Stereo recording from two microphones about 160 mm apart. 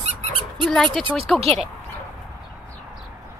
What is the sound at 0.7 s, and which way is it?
Speech, centre (ahead or behind).